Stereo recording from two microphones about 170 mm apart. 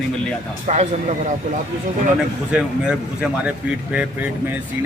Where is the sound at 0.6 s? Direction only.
40° right (ahead or behind).